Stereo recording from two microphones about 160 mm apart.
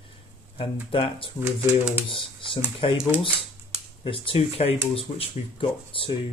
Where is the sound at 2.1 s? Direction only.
35° left (ahead or behind).